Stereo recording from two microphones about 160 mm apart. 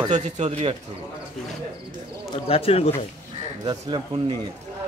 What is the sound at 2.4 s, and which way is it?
Speech, 40° left (ahead or behind).